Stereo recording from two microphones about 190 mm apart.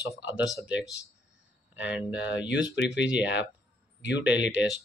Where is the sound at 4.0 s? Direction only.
70° left (ahead or behind).